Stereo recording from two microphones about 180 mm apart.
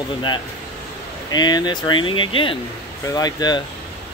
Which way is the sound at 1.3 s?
25° left (ahead or behind).